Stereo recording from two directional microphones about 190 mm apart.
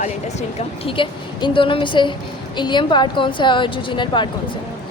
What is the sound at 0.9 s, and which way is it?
Speech, 25° left (ahead or behind).